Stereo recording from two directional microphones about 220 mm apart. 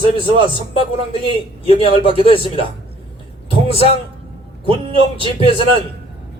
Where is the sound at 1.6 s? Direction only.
25° left (ahead or behind).